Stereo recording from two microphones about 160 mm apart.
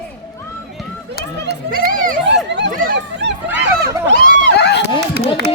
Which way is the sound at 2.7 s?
75° right (ahead or behind).